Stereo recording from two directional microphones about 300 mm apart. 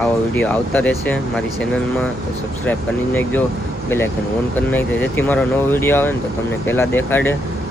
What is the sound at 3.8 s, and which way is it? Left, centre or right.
Speech, centre.